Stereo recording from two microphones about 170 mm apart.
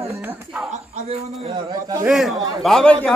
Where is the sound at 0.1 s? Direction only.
10° right (ahead or behind).